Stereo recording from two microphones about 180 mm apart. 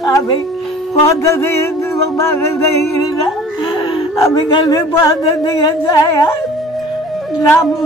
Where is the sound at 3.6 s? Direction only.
25° left (ahead or behind).